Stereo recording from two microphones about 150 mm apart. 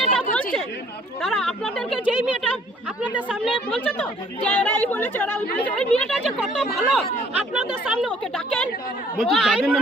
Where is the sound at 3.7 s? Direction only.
5° left (ahead or behind).